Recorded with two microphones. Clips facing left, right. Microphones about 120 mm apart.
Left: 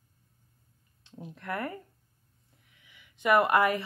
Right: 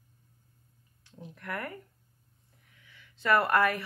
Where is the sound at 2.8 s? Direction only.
15° left (ahead or behind).